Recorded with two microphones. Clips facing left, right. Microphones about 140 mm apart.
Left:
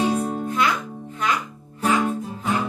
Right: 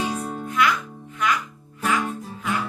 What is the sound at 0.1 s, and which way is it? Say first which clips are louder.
Music: left 5 dB; 25° left (ahead or behind).